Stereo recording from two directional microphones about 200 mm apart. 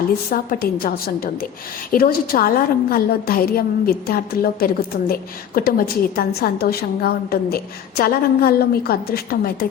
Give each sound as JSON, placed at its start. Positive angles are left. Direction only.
{"t": 0.3, "sound": "a woman's voice", "side_deg": 50}